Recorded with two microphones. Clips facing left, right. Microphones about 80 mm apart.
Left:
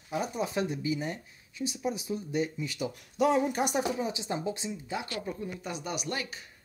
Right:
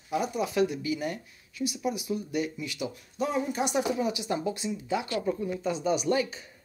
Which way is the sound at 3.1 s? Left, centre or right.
Left.